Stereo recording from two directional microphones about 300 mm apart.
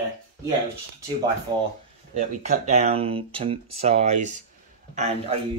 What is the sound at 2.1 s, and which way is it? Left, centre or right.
Speech, right.